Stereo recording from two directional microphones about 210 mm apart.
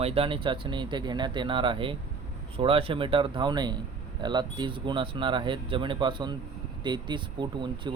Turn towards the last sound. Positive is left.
turn(degrees=-20)  # may be behind; listen again after turning